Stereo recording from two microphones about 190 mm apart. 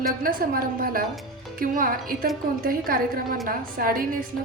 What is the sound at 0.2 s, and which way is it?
A woman's voice, 50° right (ahead or behind).